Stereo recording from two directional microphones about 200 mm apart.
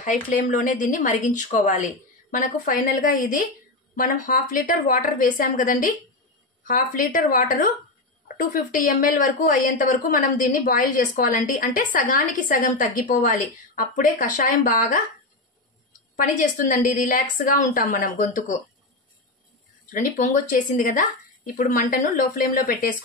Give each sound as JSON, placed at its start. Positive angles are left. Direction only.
{"t": 0.0, "sound": "a woman's voice", "side_deg": 40}
{"t": 16.3, "sound": "speech", "side_deg": 40}
{"t": 19.9, "sound": "a woman's voice", "side_deg": 40}